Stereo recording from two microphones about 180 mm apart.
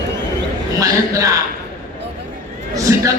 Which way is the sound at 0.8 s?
20° right (ahead or behind).